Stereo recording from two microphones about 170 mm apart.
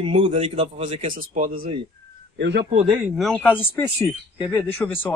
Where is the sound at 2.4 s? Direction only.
90° right.